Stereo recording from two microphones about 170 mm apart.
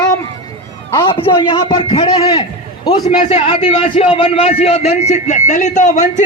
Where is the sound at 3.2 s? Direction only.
40° left (ahead or behind).